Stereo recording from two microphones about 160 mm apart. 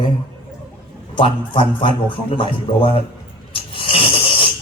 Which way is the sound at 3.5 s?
35° left (ahead or behind).